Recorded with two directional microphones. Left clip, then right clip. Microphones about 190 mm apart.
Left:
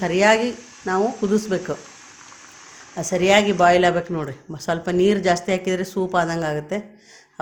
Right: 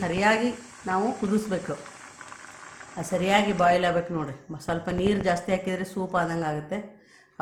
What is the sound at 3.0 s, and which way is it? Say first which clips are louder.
A woman's voice: left 7 dB; 35° left (ahead or behind).